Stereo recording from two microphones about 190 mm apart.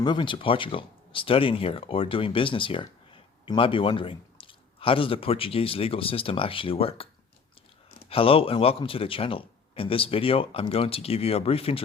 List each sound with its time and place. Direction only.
0.0 s speech: 25° left (ahead or behind)
8.1 s speech: 30° left (ahead or behind)